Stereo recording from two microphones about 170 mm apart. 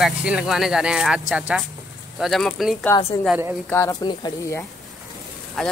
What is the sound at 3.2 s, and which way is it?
Speech, 10° right (ahead or behind).